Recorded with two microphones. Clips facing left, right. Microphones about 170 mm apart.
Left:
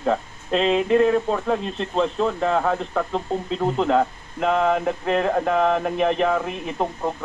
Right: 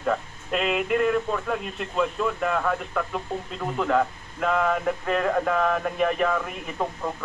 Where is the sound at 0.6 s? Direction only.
35° left (ahead or behind).